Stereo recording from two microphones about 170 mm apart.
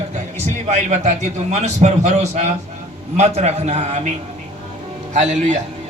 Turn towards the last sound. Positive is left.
turn(degrees=-45)  # may be behind; listen again after turning